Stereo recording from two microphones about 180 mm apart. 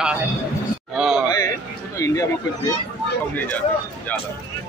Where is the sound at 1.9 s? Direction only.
20° left (ahead or behind).